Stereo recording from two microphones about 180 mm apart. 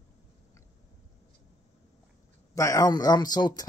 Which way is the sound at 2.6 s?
20° left (ahead or behind).